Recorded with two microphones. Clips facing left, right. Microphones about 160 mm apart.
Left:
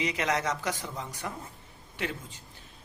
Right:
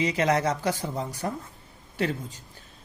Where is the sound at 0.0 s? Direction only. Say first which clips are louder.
Right 6 dB; 30° right (ahead or behind).